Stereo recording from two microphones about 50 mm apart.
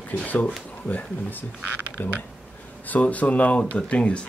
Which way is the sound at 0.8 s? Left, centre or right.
Left.